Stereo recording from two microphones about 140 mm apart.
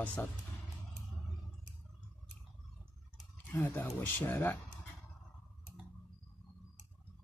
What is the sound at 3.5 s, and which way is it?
Speech, 15° left (ahead or behind).